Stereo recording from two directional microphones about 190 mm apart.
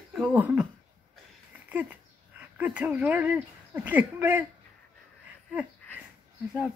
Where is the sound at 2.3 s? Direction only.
10° right (ahead or behind).